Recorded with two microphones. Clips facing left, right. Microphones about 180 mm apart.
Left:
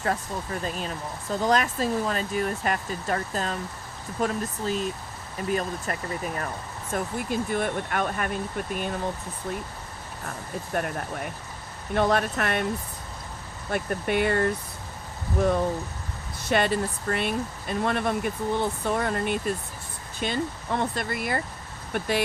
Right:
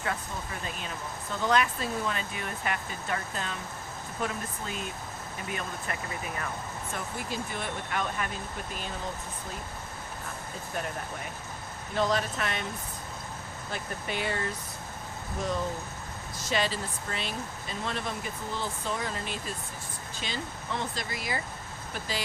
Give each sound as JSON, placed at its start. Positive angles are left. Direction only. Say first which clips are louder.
{"t": 0.6, "sound": "speech", "louder": "left 6 dB", "side_deg": 40}
{"t": 6.9, "sound": "speech", "louder": "left 9 dB", "side_deg": 50}
{"t": 11.9, "sound": "speech", "louder": "left 5 dB", "side_deg": 60}
{"t": 13.7, "sound": "speech", "louder": "left 9 dB", "side_deg": 60}